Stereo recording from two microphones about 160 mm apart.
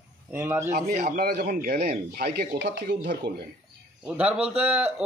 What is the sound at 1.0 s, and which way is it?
Speech, 70° right (ahead or behind).